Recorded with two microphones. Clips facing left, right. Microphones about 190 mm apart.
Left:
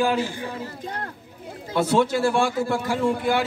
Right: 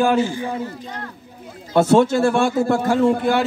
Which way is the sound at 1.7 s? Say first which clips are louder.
Right 6 dB; 45° right (ahead or behind).